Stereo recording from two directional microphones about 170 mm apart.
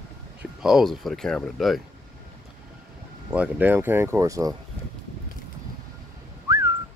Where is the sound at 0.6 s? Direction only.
Centre (ahead or behind).